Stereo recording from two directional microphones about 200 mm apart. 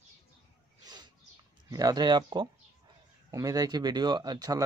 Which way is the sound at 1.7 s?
20° right (ahead or behind).